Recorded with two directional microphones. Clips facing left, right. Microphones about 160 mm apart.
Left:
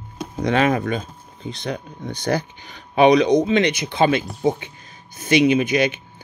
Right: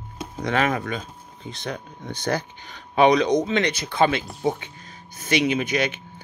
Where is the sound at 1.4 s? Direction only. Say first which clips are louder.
Left 4 dB; 35° left (ahead or behind).